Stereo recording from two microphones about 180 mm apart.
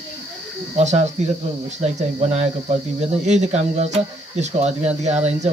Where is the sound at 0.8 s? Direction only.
40° right (ahead or behind).